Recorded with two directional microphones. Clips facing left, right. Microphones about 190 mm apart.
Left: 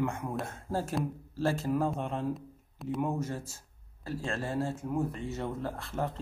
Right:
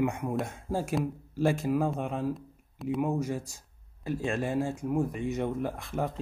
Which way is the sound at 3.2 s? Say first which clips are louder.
Right 4 dB; 15° right (ahead or behind).